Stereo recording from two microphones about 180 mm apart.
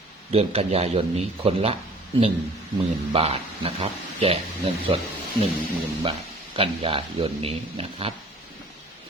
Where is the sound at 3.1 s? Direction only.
35° right (ahead or behind).